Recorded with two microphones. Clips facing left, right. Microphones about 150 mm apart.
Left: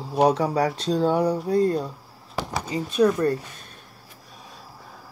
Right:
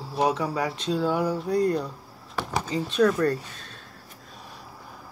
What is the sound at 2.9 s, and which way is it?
Speech, 10° left (ahead or behind).